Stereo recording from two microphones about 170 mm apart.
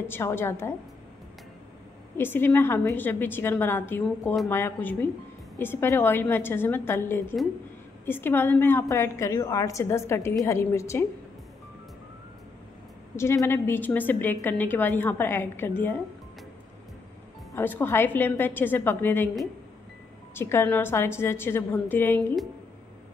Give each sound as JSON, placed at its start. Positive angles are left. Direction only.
{"t": 0.1, "sound": "a woman's voice", "side_deg": 15}
{"t": 2.1, "sound": "a woman's voice", "side_deg": 15}
{"t": 13.1, "sound": "a woman's voice", "side_deg": 15}
{"t": 17.6, "sound": "a woman's voice", "side_deg": 10}
{"t": 20.3, "sound": "a woman's voice", "side_deg": 15}